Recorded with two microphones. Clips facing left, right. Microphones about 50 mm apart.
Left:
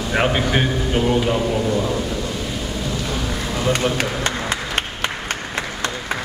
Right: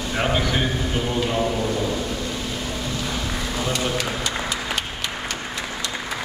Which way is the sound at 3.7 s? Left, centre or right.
Left.